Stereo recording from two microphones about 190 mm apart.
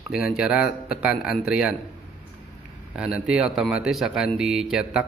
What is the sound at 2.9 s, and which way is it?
Speech, 5° right (ahead or behind).